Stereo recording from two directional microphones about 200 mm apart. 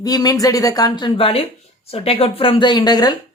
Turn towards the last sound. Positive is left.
turn(degrees=20)  # may be behind; listen again after turning